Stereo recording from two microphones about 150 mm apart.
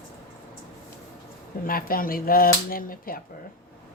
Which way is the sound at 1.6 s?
75° left (ahead or behind).